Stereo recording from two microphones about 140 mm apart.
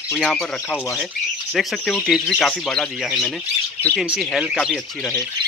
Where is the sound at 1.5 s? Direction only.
5° left (ahead or behind).